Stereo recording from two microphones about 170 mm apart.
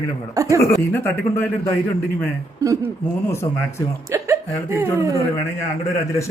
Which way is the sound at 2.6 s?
20° right (ahead or behind).